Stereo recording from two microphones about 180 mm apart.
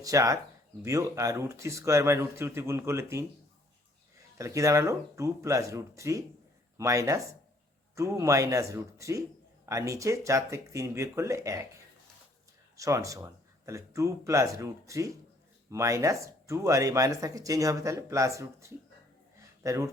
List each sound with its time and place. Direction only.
0.0 s speech: 20° right (ahead or behind)
4.4 s speech: 15° right (ahead or behind)
12.7 s speech: 20° right (ahead or behind)